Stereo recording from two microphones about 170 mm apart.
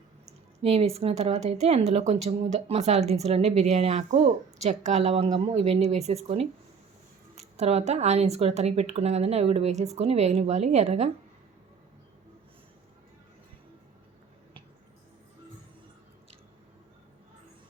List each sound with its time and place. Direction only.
0.6 s speech: 35° right (ahead or behind)